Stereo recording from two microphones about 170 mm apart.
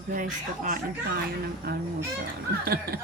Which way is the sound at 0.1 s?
50° right (ahead or behind).